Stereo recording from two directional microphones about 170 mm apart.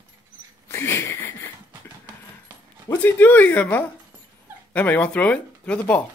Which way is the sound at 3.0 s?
10° left (ahead or behind).